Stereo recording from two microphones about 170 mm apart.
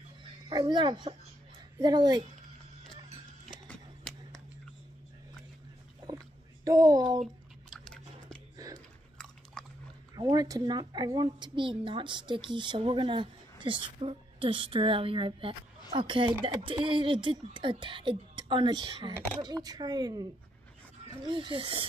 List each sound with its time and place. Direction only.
0.5 s speech: 25° right (ahead or behind)
6.0 s a sound: 20° right (ahead or behind)
7.7 s biting: 5° left (ahead or behind)
8.5 s biting: 20° right (ahead or behind)
9.2 s biting: 5° left (ahead or behind)
10.1 s speech: 20° right (ahead or behind)